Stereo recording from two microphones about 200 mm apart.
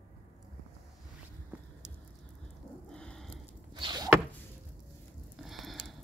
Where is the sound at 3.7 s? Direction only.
20° right (ahead or behind).